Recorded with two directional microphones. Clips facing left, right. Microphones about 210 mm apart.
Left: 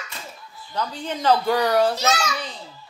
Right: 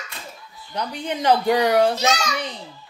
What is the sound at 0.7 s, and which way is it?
A woman's voice, 15° right (ahead or behind).